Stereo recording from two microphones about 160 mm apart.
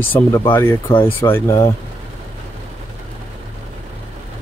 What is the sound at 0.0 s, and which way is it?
Speech, 10° left (ahead or behind).